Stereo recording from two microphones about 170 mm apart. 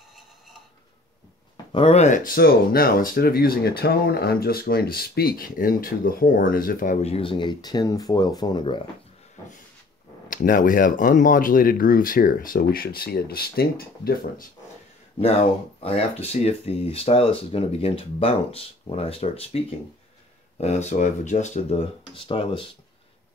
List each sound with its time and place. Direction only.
1.7 s speech: 35° left (ahead or behind)
10.3 s speech: 55° left (ahead or behind)
15.8 s speech: 35° left (ahead or behind)
20.6 s speech: 40° left (ahead or behind)